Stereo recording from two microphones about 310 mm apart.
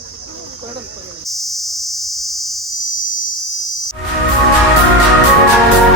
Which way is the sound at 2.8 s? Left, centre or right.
Left.